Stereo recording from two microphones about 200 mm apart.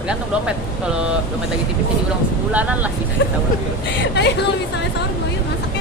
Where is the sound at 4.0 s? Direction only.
60° left (ahead or behind).